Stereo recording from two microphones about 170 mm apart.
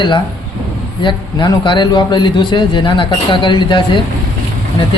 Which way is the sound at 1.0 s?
30° left (ahead or behind).